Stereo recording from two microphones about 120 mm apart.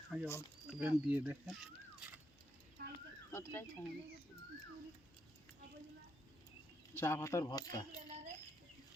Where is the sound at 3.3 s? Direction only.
20° left (ahead or behind).